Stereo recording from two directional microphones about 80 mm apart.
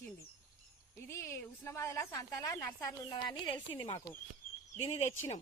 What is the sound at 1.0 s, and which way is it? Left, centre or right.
A woman's voice, left.